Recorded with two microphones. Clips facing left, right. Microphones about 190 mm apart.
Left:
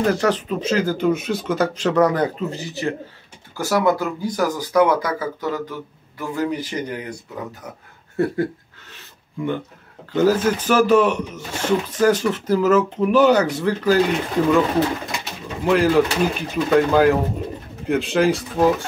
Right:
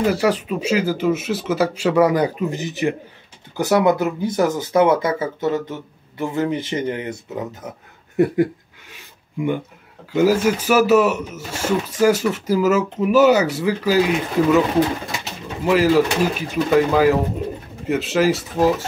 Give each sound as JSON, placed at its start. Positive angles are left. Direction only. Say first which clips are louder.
{"t": 0.0, "sound": "speech", "louder": "right 1 dB", "side_deg": -10}
{"t": 8.2, "sound": "speech", "louder": "right 4 dB", "side_deg": -15}
{"t": 8.9, "sound": "a sound", "louder": "right 3 dB", "side_deg": -15}
{"t": 10.1, "sound": "speech", "louder": "right 1 dB", "side_deg": -10}
{"t": 15.6, "sound": "speech", "louder": "right 1 dB", "side_deg": -5}